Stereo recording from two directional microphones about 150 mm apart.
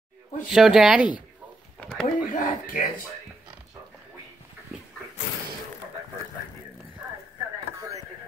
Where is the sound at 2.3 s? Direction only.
65° left (ahead or behind).